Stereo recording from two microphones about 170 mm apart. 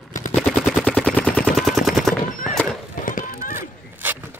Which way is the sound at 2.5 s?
Centre (ahead or behind).